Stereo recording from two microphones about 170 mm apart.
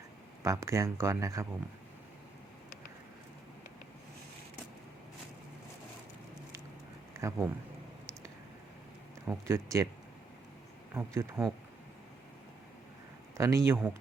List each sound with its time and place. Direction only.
0.4 s speech: 15° right (ahead or behind)
7.2 s speech: 15° right (ahead or behind)
9.2 s speech: 15° right (ahead or behind)
10.9 s speech: 15° right (ahead or behind)
13.3 s speech: 20° right (ahead or behind)